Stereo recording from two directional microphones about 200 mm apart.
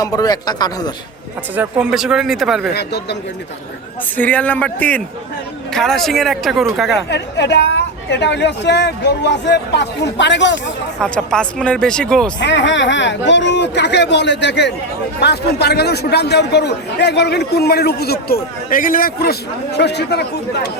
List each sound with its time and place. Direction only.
0.0 s speech: 20° left (ahead or behind)
1.5 s speech: 5° right (ahead or behind)
2.7 s a woman's voice: 55° left (ahead or behind)
4.2 s speech: 10° left (ahead or behind)
7.1 s a woman's voice: 60° left (ahead or behind)
11.0 s speech: 5° left (ahead or behind)
12.4 s a woman's voice: 60° left (ahead or behind)